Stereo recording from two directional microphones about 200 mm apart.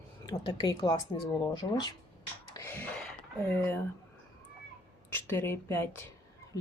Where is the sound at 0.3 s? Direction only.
20° left (ahead or behind).